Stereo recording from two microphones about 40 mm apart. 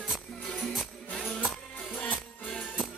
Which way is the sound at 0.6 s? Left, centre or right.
Centre.